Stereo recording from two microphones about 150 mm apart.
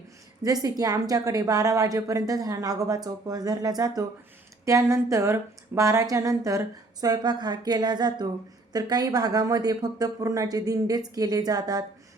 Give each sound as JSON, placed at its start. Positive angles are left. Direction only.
{"t": 0.4, "sound": "a woman's voice", "side_deg": -25}